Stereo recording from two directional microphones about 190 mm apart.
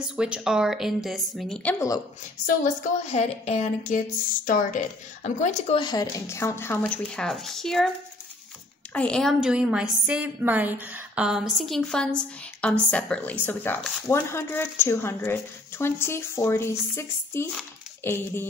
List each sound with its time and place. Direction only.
0.0 s a woman's voice: 5° right (ahead or behind); by 2.0 s 10° left (ahead or behind)
2.4 s a woman's voice: 40° left (ahead or behind)
5.8 s speech: 20° left (ahead or behind); by 7.9 s centre (ahead or behind)
8.9 s a woman's voice: 5° left (ahead or behind)